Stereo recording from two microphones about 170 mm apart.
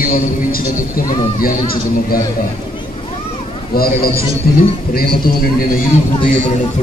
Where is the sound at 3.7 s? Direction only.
60° left (ahead or behind).